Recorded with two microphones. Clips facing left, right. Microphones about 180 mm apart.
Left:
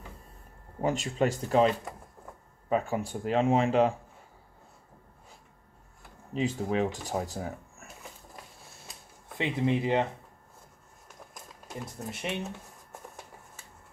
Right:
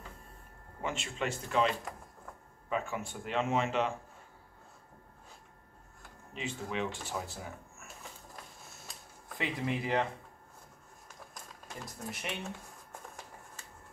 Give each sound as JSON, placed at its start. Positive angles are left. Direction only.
{"t": 0.7, "sound": "speech", "side_deg": 40}
{"t": 2.7, "sound": "speech", "side_deg": 35}
{"t": 6.3, "sound": "speech", "side_deg": 40}
{"t": 9.4, "sound": "speech", "side_deg": 25}
{"t": 12.1, "sound": "speech", "side_deg": 25}